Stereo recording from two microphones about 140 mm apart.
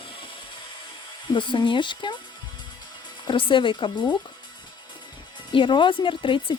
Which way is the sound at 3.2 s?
35° left (ahead or behind).